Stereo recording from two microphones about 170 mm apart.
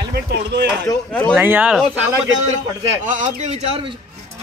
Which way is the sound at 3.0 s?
50° right (ahead or behind).